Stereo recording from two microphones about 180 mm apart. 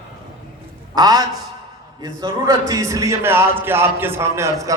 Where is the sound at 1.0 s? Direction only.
20° right (ahead or behind).